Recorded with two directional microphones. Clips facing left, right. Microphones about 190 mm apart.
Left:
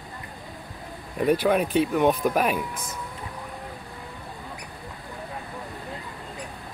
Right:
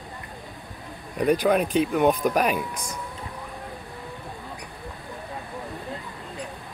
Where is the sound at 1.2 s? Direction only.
5° left (ahead or behind).